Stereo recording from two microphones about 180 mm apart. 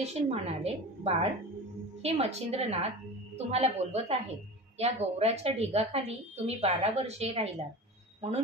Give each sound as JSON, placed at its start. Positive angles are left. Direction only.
{"t": 0.0, "sound": "a woman's voice", "side_deg": -35}